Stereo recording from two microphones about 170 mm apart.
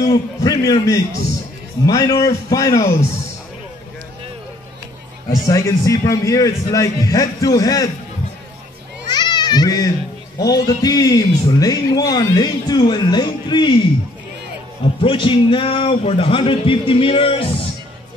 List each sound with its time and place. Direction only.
0.1 s a man's voice: 20° left (ahead or behind)
5.5 s a man's voice: 20° left (ahead or behind)
9.0 s babbling: 25° left (ahead or behind)
10.4 s a man's voice: 20° left (ahead or behind)
15.0 s speech: 30° left (ahead or behind)